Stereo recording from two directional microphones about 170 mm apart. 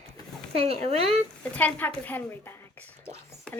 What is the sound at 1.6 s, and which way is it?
Speech, 10° left (ahead or behind).